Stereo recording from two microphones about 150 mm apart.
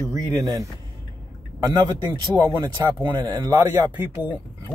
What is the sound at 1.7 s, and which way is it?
Speech, 25° right (ahead or behind).